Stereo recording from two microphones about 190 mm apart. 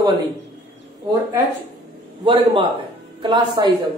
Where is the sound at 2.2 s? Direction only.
25° right (ahead or behind).